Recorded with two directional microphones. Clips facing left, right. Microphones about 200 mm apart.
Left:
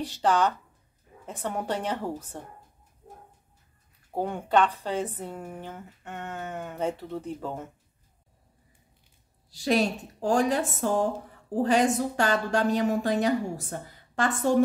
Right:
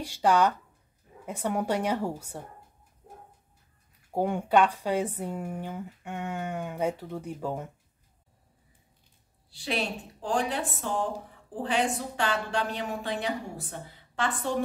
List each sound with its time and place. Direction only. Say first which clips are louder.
0.0 s speech: right 1 dB; 10° right (ahead or behind)
4.1 s speech: right 1 dB; 10° right (ahead or behind)
9.5 s speech: left 7 dB; 40° left (ahead or behind)